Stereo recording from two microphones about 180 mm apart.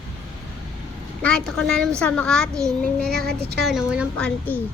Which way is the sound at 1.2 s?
5° left (ahead or behind).